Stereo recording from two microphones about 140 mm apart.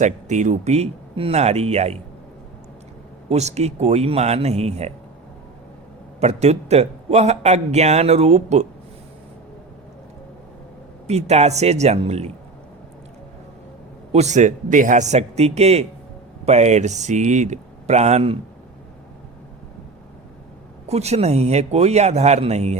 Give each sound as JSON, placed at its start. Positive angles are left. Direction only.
{"t": 0.0, "sound": "a man's voice", "side_deg": -60}
{"t": 3.2, "sound": "a man's voice", "side_deg": -50}
{"t": 6.1, "sound": "a man's voice", "side_deg": -50}
{"t": 11.0, "sound": "a man's voice", "side_deg": -50}
{"t": 14.1, "sound": "a man's voice", "side_deg": -55}
{"t": 20.8, "sound": "a man's voice", "side_deg": -50}